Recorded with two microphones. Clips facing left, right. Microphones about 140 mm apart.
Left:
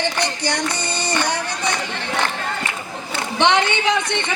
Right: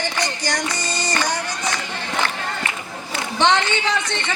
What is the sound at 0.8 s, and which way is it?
Music, 65° left (ahead or behind).